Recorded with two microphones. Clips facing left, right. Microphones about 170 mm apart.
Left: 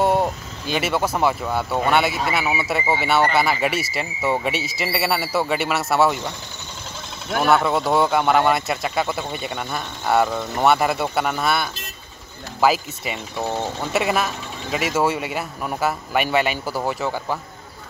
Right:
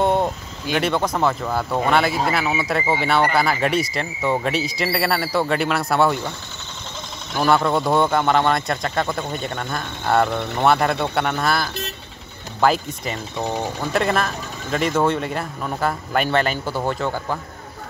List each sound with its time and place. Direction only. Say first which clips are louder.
0.0 s a sound: even; 5° left (ahead or behind)
0.7 s a man's voice: right 1 dB; 5° left (ahead or behind)
7.3 s a man's voice: even; 5° left (ahead or behind)
13.4 s speech: even; 15° right (ahead or behind)
13.7 s a man's voice: right 1 dB; 5° left (ahead or behind)